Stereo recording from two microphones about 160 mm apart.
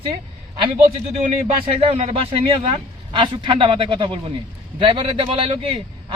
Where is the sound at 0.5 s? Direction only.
35° right (ahead or behind).